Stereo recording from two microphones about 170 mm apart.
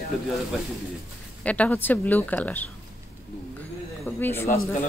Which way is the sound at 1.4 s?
10° left (ahead or behind).